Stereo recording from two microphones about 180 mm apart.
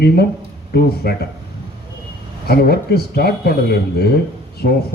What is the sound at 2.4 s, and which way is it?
Speech, 60° left (ahead or behind).